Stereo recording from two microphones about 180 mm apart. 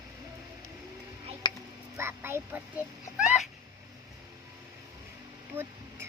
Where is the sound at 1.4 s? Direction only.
25° left (ahead or behind).